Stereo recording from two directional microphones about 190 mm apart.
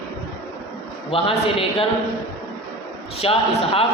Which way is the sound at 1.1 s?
30° left (ahead or behind).